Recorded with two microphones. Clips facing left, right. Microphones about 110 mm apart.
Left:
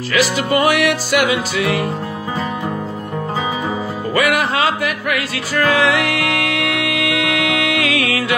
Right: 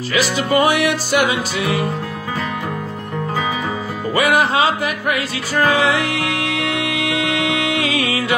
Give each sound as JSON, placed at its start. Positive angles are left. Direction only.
{"t": 0.1, "sound": "music", "side_deg": -25}
{"t": 4.1, "sound": "music", "side_deg": -25}